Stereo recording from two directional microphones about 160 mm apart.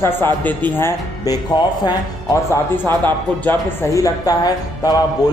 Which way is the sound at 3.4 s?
15° left (ahead or behind).